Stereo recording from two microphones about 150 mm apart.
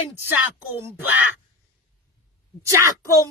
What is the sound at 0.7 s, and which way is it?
Speech, 15° right (ahead or behind).